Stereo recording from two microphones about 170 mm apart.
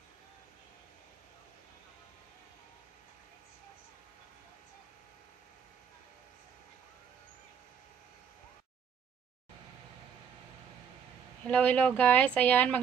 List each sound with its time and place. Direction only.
11.4 s speech: 10° left (ahead or behind)